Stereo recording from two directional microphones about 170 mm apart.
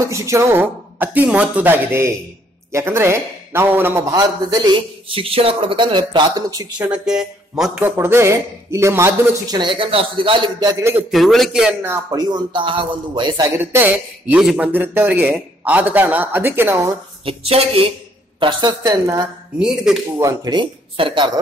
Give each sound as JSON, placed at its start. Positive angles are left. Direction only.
{"t": 0.1, "sound": "a man's voice", "side_deg": -15}
{"t": 6.9, "sound": "speech", "side_deg": -5}
{"t": 7.9, "sound": "a man's voice", "side_deg": -15}
{"t": 9.6, "sound": "a man's voice", "side_deg": -30}
{"t": 11.1, "sound": "a man's voice", "side_deg": 0}
{"t": 13.6, "sound": "a man's voice", "side_deg": -10}
{"t": 17.2, "sound": "a woman's voice", "side_deg": -35}
{"t": 19.6, "sound": "speech", "side_deg": -5}
{"t": 20.2, "sound": "a man's voice", "side_deg": -20}